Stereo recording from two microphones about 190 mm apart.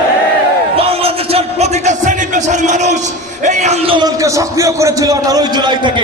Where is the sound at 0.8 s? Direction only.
30° right (ahead or behind).